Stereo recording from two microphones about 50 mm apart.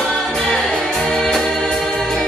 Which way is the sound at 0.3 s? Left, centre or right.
Centre.